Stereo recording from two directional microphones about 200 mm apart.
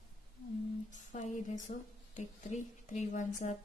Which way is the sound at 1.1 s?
35° left (ahead or behind).